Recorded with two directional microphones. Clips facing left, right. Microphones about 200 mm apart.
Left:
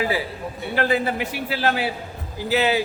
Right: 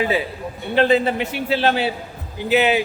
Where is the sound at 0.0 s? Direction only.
20° right (ahead or behind).